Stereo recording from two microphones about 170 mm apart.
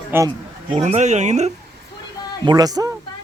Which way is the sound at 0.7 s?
45° right (ahead or behind).